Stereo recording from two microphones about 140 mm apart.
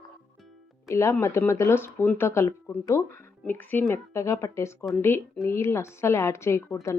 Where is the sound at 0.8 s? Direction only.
20° left (ahead or behind).